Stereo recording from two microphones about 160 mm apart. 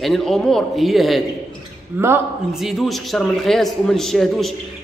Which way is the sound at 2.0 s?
10° right (ahead or behind).